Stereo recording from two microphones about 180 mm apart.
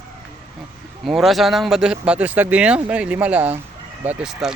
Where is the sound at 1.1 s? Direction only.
Centre (ahead or behind).